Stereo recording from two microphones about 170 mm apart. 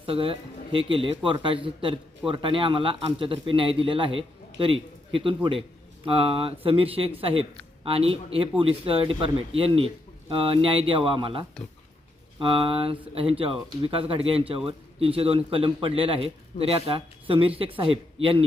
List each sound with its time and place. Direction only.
0.0 s a man's voice: 35° right (ahead or behind)